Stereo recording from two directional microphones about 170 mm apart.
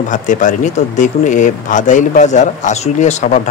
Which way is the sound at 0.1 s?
50° left (ahead or behind).